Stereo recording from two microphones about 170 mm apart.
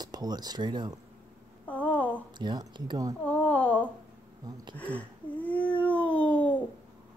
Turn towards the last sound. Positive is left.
turn(degrees=10)  # may be behind; listen again after turning